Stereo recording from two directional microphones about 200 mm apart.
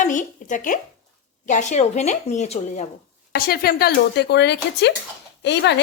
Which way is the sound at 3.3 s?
50° left (ahead or behind).